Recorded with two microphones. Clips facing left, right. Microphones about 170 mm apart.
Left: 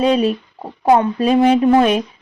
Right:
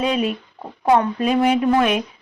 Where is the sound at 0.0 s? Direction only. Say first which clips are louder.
Left 6 dB; 35° left (ahead or behind).